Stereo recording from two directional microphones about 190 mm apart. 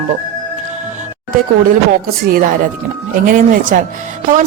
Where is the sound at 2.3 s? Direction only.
50° right (ahead or behind).